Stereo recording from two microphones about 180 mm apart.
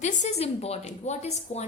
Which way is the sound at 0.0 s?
40° left (ahead or behind).